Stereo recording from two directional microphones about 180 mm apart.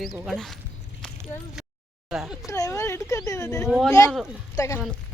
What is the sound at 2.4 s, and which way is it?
Speech, 15° left (ahead or behind).